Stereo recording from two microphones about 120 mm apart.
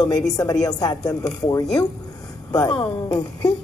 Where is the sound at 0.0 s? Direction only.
30° left (ahead or behind).